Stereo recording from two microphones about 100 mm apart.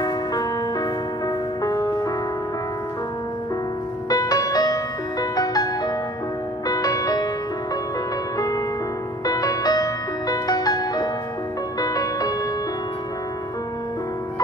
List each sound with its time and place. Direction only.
0.0 s music: 40° left (ahead or behind)
4.1 s music: 40° left (ahead or behind)
6.7 s music: 40° left (ahead or behind)
8.4 s music: 35° left (ahead or behind)